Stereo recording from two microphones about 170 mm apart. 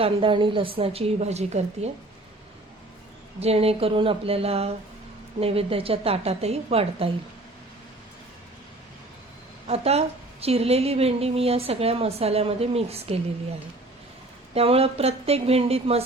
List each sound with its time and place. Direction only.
0.0 s a woman's voice: 30° right (ahead or behind)
3.4 s a woman's voice: 35° right (ahead or behind)
9.6 s a woman's voice: 35° right (ahead or behind)
14.5 s a woman's voice: 35° right (ahead or behind)